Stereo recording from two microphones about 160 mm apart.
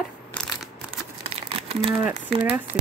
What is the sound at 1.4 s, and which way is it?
Crumpling, 40° right (ahead or behind).